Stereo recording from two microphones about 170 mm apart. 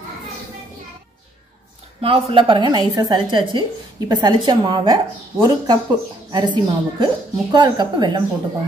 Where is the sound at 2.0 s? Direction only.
35° right (ahead or behind).